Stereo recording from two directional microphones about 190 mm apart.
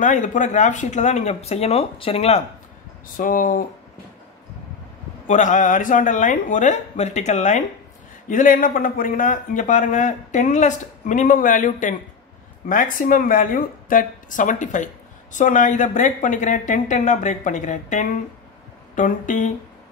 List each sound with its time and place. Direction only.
0.0 s speech: 45° left (ahead or behind)
3.2 s speech: 45° left (ahead or behind)
5.2 s speech: 40° left (ahead or behind)